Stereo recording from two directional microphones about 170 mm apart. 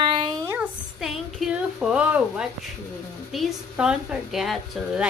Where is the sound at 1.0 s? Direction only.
Centre (ahead or behind).